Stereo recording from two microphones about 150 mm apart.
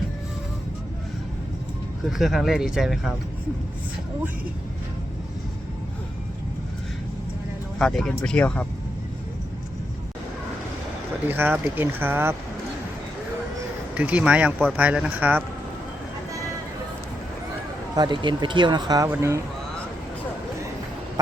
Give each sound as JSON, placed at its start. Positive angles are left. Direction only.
{"t": 2.0, "sound": "speech", "side_deg": 0}
{"t": 7.8, "sound": "speech", "side_deg": 5}
{"t": 11.3, "sound": "speech", "side_deg": -15}
{"t": 13.9, "sound": "speech", "side_deg": -10}
{"t": 17.9, "sound": "speech", "side_deg": -30}